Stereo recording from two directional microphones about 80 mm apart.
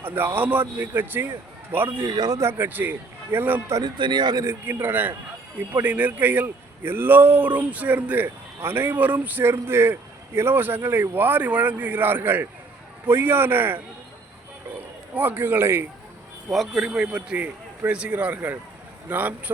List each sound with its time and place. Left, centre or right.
0.0 s a man's voice: right
2.0 s speech: right
2.4 s a man's voice: right
3.8 s speech: right
4.4 s a man's voice: right
15.1 s a man's voice: right
16.5 s a man's voice: centre; by 19.3 s right